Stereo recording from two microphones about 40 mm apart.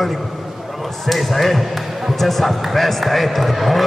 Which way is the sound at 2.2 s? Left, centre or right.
Centre.